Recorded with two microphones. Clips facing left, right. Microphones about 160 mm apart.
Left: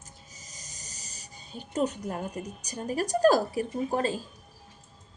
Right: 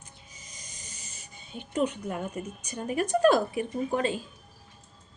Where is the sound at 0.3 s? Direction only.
40° left (ahead or behind).